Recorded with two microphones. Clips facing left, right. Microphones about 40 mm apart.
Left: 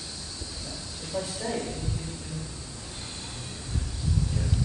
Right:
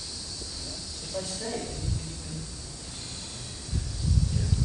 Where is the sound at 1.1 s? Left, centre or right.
Centre.